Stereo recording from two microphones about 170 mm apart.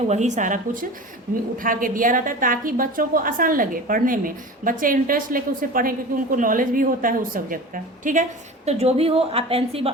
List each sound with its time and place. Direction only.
0.1 s a woman's voice: 45° right (ahead or behind)